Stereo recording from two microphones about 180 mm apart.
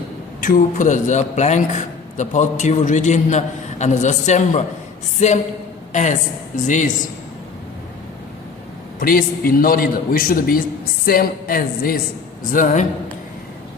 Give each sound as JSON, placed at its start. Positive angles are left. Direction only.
{"t": 0.4, "sound": "a man's voice", "side_deg": 45}
{"t": 9.0, "sound": "a man's voice", "side_deg": 50}